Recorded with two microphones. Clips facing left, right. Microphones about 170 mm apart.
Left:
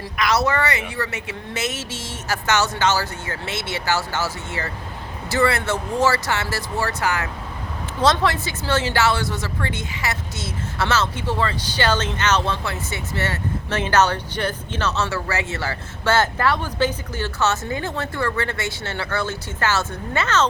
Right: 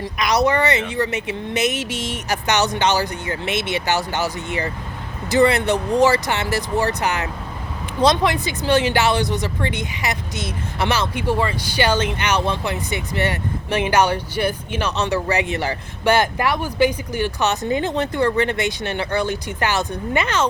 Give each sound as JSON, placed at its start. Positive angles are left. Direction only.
{"t": 0.0, "sound": "speech", "side_deg": -20}